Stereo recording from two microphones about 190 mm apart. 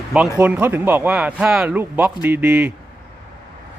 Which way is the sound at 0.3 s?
10° right (ahead or behind).